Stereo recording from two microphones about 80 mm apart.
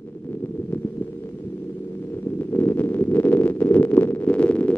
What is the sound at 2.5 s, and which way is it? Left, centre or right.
Heart murmur, left.